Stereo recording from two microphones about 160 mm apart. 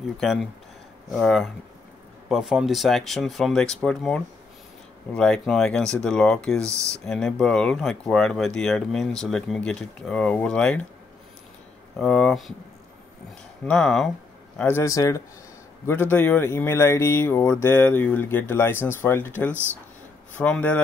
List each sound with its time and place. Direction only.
0.2 s speech: centre (ahead or behind)
12.0 s speech: 5° left (ahead or behind)
13.7 s speech: 5° left (ahead or behind)
14.6 s speech: 15° left (ahead or behind)